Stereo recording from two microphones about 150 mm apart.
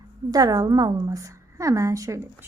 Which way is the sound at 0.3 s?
25° right (ahead or behind).